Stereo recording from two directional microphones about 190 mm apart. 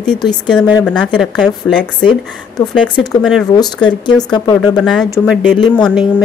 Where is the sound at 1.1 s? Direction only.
5° left (ahead or behind).